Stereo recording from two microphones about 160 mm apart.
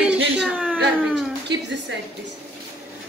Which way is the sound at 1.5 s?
90° right.